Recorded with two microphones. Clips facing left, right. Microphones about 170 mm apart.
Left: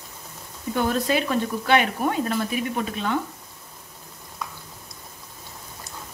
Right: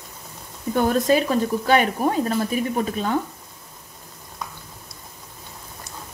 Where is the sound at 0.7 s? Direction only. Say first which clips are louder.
Right 4 dB; 45° right (ahead or behind).